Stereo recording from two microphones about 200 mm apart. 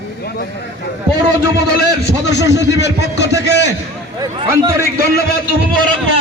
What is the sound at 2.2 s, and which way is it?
A man's voice, 60° left (ahead or behind).